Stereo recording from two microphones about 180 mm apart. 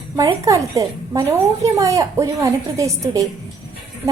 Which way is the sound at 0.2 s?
20° right (ahead or behind).